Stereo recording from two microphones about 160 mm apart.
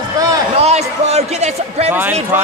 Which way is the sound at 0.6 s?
40° right (ahead or behind).